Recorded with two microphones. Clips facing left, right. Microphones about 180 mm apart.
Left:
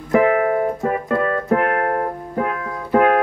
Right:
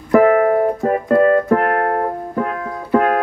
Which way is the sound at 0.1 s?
45° right (ahead or behind).